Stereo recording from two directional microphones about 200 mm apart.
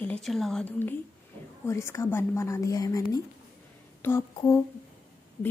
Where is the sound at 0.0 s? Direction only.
5° left (ahead or behind).